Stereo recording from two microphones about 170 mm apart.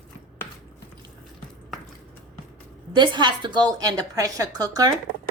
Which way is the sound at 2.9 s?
25° right (ahead or behind).